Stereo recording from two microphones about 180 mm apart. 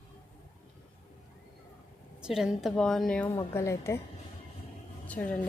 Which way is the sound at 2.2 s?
5° right (ahead or behind).